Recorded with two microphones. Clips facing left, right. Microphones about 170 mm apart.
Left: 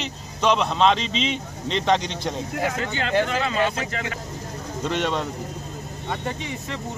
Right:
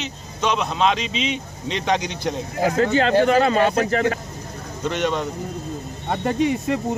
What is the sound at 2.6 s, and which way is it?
Speech, 40° right (ahead or behind).